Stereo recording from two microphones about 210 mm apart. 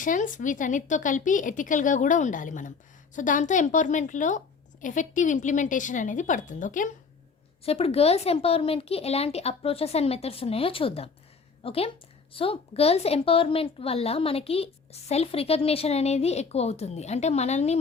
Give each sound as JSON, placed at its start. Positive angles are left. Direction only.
{"t": 0.0, "sound": "a woman's voice", "side_deg": 40}